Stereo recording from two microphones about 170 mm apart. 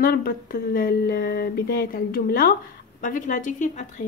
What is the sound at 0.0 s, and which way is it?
A woman's voice, 60° left (ahead or behind).